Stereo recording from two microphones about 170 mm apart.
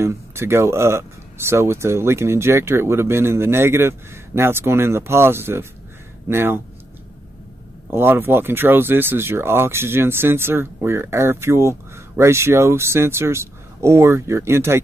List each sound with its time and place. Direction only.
0.0 s speech: 15° right (ahead or behind)
7.9 s speech: 15° right (ahead or behind)